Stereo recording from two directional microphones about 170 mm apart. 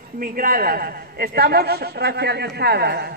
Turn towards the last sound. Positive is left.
turn(degrees=-70)  # may be behind; listen again after turning